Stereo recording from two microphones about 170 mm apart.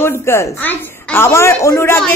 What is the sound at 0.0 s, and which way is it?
A man's voice, 15° left (ahead or behind).